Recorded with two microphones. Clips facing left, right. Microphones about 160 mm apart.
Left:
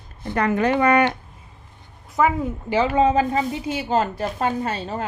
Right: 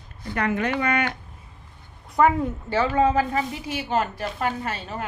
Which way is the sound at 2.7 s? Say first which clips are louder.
Left 3 dB; 20° left (ahead or behind).